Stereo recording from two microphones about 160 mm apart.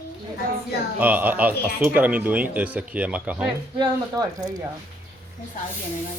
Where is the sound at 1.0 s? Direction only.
10° right (ahead or behind).